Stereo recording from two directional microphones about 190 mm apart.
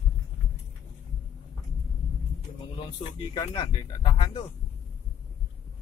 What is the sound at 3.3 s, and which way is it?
Speech, 25° left (ahead or behind).